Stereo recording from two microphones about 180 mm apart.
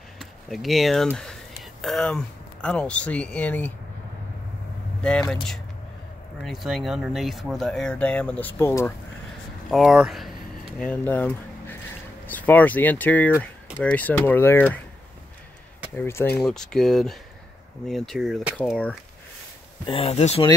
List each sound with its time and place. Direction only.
0.2 s speech: centre (ahead or behind)
6.4 s speech: centre (ahead or behind); by 8.9 s 15° left (ahead or behind)
9.7 s a sound: centre (ahead or behind)
12.3 s speech: 10° left (ahead or behind)
16.0 s speech: 15° left (ahead or behind)
16.3 s speech: centre (ahead or behind)
19.9 s speech: 35° left (ahead or behind)